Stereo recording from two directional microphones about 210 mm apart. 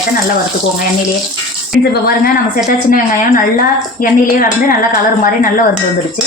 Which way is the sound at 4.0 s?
40° left (ahead or behind).